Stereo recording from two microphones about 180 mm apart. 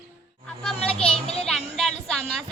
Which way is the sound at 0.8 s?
35° left (ahead or behind).